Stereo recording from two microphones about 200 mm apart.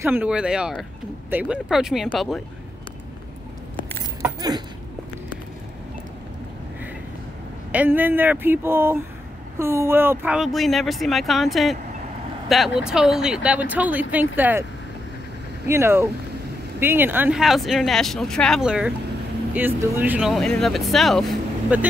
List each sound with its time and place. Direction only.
0.0 s speech: 10° right (ahead or behind)
4.2 s a sound: 20° right (ahead or behind)
7.7 s speech: 10° right (ahead or behind)
15.6 s speech: 15° right (ahead or behind)